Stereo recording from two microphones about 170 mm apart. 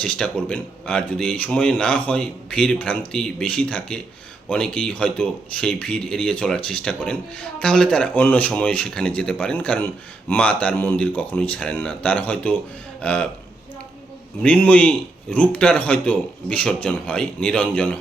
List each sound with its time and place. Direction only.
0.0 s speech: 5° left (ahead or behind)
14.4 s speech: 10° left (ahead or behind)